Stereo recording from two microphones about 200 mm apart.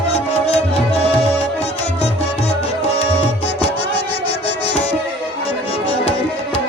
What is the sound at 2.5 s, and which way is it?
Music, 30° left (ahead or behind).